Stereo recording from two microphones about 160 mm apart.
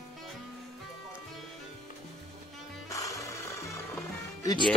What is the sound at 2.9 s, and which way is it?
Music, 20° left (ahead or behind).